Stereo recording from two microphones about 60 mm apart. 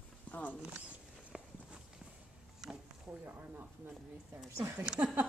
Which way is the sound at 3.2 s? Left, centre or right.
Right.